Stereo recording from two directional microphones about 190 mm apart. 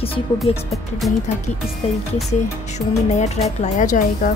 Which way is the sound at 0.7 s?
Centre (ahead or behind).